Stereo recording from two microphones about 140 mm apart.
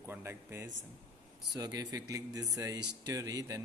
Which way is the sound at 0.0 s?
15° right (ahead or behind).